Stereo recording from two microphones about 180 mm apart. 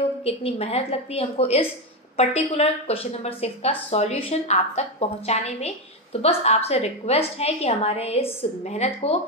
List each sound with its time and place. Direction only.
0.2 s a woman's voice: 35° left (ahead or behind)